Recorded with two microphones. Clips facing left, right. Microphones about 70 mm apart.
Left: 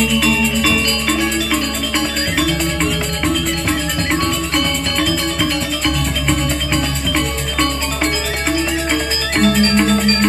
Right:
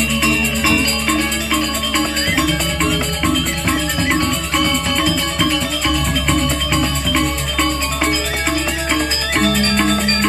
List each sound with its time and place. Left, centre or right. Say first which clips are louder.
0.0 s music: left 2 dB; centre
9.4 s music: left 3 dB; centre